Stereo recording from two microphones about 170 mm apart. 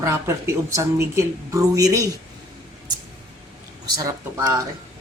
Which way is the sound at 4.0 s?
20° right (ahead or behind).